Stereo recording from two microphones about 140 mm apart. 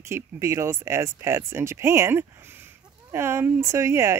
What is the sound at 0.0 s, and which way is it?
Speech, 20° right (ahead or behind).